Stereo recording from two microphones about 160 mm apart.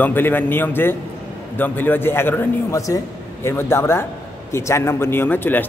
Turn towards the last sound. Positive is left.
turn(degrees=10)  # may be behind; listen again after turning